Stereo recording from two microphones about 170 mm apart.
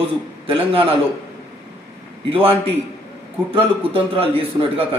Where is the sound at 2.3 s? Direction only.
30° right (ahead or behind).